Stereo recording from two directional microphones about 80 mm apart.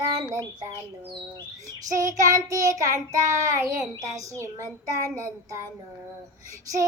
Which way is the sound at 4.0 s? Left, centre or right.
Right.